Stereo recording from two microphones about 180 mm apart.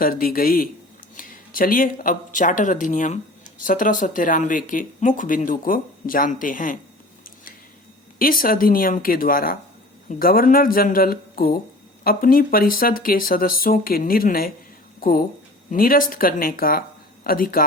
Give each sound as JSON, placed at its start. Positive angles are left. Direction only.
{"t": 0.0, "sound": "speech", "side_deg": 55}
{"t": 8.2, "sound": "speech", "side_deg": 55}
{"t": 15.7, "sound": "speech", "side_deg": 50}